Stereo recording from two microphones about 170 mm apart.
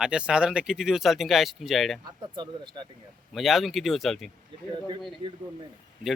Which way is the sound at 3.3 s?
Centre (ahead or behind).